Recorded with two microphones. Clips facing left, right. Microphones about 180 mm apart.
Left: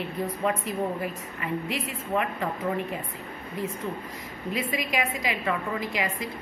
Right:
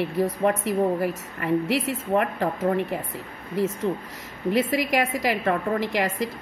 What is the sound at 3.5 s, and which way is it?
A woman's voice, 80° right.